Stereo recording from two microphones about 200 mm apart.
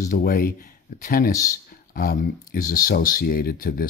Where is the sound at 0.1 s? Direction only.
45° left (ahead or behind).